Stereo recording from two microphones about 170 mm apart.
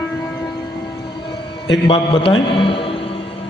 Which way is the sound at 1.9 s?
30° left (ahead or behind).